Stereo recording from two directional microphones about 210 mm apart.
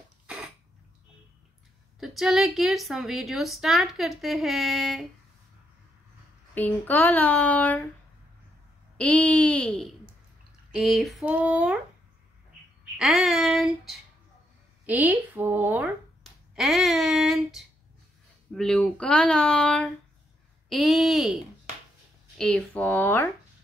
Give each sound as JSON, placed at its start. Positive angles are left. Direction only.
{"t": 2.0, "sound": "a woman's voice", "side_deg": 0}
{"t": 6.5, "sound": "speech", "side_deg": 10}
{"t": 8.9, "sound": "a woman's voice", "side_deg": 5}
{"t": 12.9, "sound": "a woman's voice", "side_deg": 0}
{"t": 22.4, "sound": "speech", "side_deg": 5}